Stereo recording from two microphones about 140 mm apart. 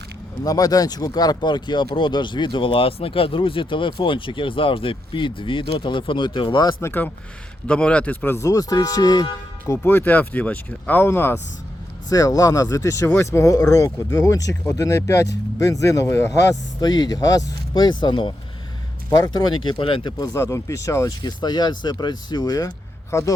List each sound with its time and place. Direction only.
0.4 s speech: 25° left (ahead or behind)
6.8 s speech: 15° left (ahead or behind)
9.7 s speech: 15° left (ahead or behind)